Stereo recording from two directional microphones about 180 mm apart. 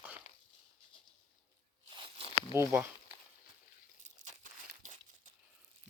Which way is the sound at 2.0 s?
30° right (ahead or behind).